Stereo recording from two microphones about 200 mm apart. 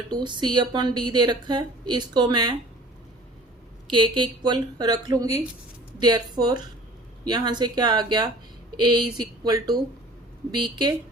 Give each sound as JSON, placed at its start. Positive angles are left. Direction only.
{"t": 0.1, "sound": "a woman's voice", "side_deg": -25}
{"t": 3.9, "sound": "a woman's voice", "side_deg": -25}